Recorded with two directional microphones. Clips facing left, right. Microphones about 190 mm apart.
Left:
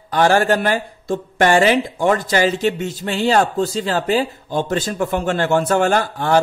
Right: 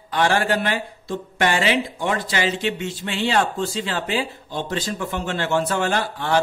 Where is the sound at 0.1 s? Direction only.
45° left (ahead or behind).